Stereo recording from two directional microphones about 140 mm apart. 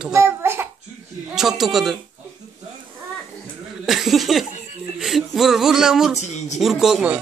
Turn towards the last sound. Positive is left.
turn(degrees=-5)  # may be behind; listen again after turning